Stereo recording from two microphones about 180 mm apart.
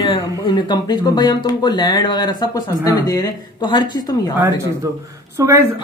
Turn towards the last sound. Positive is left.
turn(degrees=-15)  # may be behind; listen again after turning